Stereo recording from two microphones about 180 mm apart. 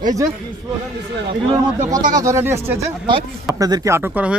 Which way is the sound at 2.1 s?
15° right (ahead or behind).